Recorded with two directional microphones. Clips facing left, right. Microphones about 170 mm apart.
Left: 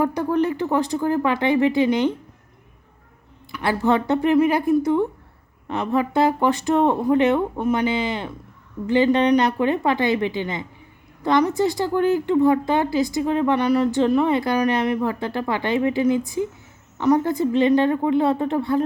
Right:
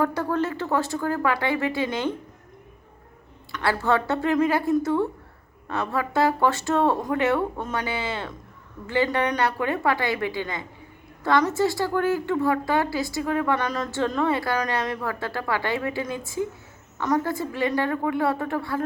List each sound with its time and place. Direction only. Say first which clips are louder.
0.0 s speech: left 4 dB; 15° left (ahead or behind)
3.5 s a woman's voice: left 3 dB; 15° left (ahead or behind)